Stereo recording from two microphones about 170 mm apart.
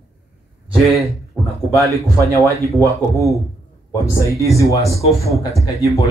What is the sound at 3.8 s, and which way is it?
Speech, 20° left (ahead or behind).